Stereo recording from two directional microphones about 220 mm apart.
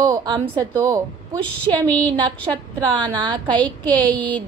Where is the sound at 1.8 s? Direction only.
5° left (ahead or behind).